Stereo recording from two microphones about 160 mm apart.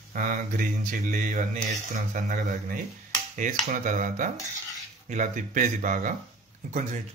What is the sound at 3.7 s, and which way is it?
Speech, 55° right (ahead or behind).